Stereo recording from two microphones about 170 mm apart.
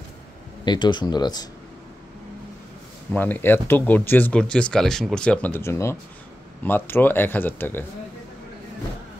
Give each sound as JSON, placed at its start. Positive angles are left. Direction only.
{"t": 0.7, "sound": "speech", "side_deg": 25}
{"t": 3.1, "sound": "speech", "side_deg": 10}